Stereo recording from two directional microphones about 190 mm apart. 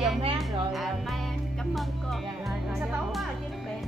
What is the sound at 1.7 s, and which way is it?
Music, centre (ahead or behind).